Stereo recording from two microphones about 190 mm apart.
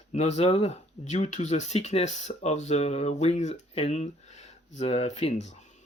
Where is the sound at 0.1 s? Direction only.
35° left (ahead or behind).